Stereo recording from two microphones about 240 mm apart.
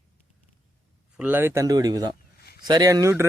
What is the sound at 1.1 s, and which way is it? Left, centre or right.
Speech, centre.